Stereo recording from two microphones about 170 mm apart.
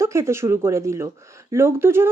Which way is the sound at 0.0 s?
15° right (ahead or behind).